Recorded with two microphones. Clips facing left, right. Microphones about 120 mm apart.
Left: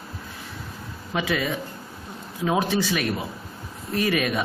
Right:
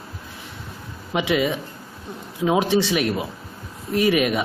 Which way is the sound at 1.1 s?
15° right (ahead or behind).